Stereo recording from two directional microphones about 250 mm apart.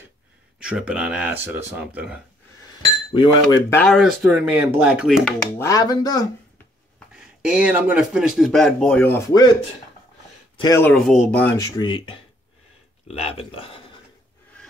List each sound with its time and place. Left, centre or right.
0.6 s speech: centre
3.1 s speech: centre
3.8 s speech: centre
5.6 s speech: centre
7.2 s speech: centre
10.6 s speech: centre
11.8 s speech: centre
13.2 s speech: left